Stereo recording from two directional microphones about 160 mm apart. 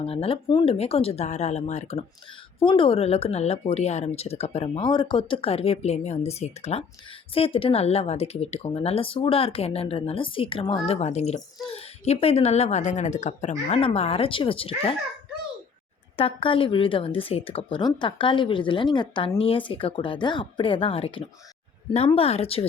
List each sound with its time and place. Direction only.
0.0 s speech: 35° left (ahead or behind)
2.6 s speech: 35° left (ahead or behind)
16.1 s speech: 35° left (ahead or behind)